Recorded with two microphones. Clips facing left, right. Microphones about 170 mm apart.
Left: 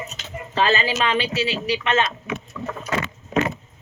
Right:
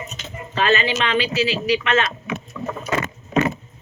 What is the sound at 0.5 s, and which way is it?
Speech, 30° left (ahead or behind).